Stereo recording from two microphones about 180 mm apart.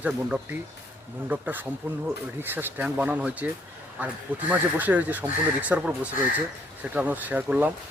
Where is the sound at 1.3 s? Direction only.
10° right (ahead or behind).